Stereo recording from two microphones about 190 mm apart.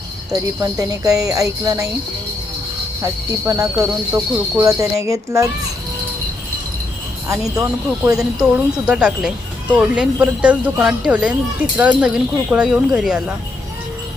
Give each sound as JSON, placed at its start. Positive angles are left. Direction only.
{"t": 0.6, "sound": "speech", "side_deg": -15}
{"t": 3.0, "sound": "speech", "side_deg": -15}
{"t": 7.3, "sound": "speech", "side_deg": -15}
{"t": 8.5, "sound": "speech", "side_deg": -5}